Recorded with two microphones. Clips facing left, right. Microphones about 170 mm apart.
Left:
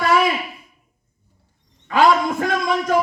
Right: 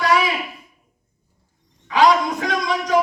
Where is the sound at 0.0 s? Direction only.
50° left (ahead or behind).